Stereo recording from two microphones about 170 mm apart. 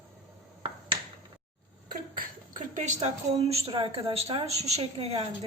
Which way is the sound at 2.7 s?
45° right (ahead or behind).